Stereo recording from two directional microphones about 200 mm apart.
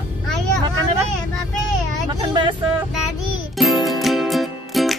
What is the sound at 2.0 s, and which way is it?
Vehicle, 20° right (ahead or behind).